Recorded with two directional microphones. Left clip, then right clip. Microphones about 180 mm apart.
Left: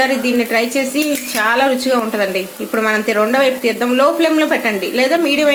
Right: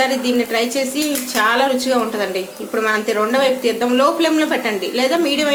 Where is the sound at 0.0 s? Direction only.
30° left (ahead or behind).